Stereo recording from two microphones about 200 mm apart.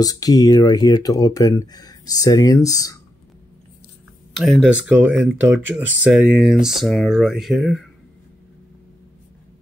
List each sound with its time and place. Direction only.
0.0 s speech: 20° left (ahead or behind)
4.3 s speech: centre (ahead or behind)